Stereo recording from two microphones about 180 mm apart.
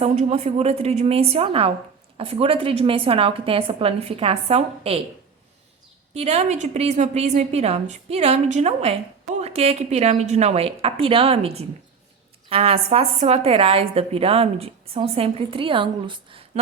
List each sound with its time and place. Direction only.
0.0 s a woman's voice: 35° right (ahead or behind)
6.1 s a woman's voice: 35° right (ahead or behind)